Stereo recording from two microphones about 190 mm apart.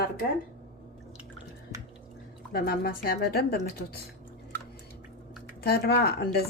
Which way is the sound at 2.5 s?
55° left (ahead or behind).